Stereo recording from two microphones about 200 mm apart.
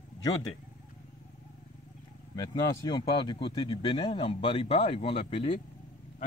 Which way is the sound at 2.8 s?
20° left (ahead or behind).